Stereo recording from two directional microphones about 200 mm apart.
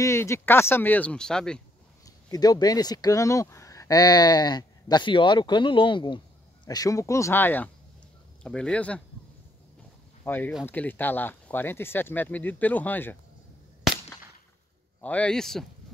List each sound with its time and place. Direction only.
0.0 s speech: 15° left (ahead or behind)
2.0 s speech: 20° left (ahead or behind)
10.2 s speech: 10° left (ahead or behind)
15.0 s speech: 5° left (ahead or behind)